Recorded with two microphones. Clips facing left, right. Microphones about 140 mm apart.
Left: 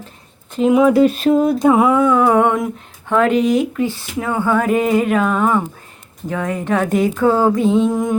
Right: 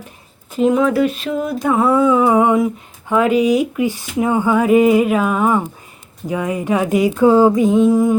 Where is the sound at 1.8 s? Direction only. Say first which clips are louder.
Even; 5° right (ahead or behind).